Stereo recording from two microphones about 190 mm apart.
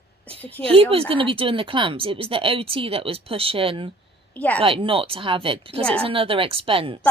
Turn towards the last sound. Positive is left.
turn(degrees=-30)  # may be behind; listen again after turning